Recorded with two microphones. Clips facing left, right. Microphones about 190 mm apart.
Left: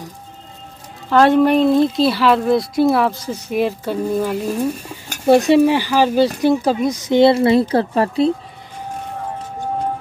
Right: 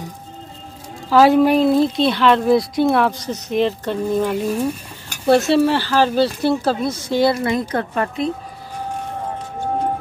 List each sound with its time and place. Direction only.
1.1 s speech: 5° right (ahead or behind); by 8.3 s 30° left (ahead or behind)